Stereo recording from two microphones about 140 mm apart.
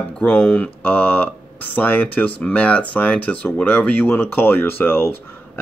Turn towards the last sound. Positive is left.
turn(degrees=15)  # may be behind; listen again after turning